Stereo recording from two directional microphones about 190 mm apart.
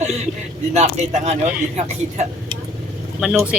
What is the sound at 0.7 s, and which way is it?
Speech, 35° right (ahead or behind).